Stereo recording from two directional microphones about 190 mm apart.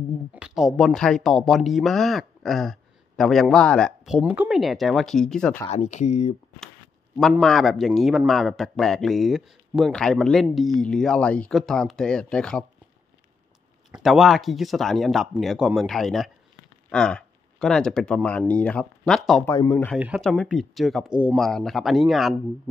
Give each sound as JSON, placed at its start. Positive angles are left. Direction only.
{"t": 0.3, "sound": "speech", "side_deg": -5}
{"t": 5.7, "sound": "speech", "side_deg": 35}
{"t": 7.2, "sound": "speech", "side_deg": 0}
{"t": 13.9, "sound": "speech", "side_deg": 0}
{"t": 19.4, "sound": "speech", "side_deg": 15}